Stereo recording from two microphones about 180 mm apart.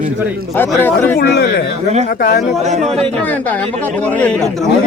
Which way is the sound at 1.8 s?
40° right (ahead or behind).